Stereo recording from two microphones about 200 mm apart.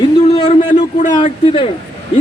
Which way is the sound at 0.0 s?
25° left (ahead or behind).